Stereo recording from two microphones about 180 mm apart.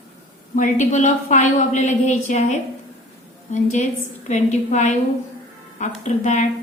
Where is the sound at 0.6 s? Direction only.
40° left (ahead or behind).